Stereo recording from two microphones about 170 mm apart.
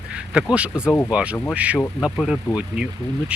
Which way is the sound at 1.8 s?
5° left (ahead or behind).